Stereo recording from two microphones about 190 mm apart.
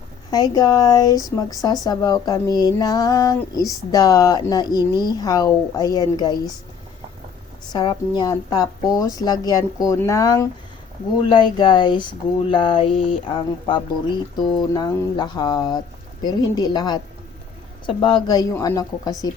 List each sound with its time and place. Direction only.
0.3 s speech: 20° left (ahead or behind)
7.7 s speech: 20° left (ahead or behind)